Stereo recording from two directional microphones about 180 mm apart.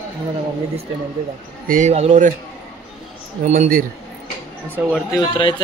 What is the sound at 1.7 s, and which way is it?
Speech, 40° right (ahead or behind).